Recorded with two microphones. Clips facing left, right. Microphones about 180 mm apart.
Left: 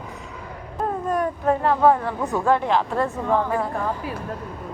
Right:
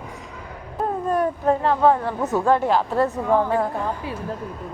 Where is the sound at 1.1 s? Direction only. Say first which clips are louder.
Right 2 dB; centre (ahead or behind).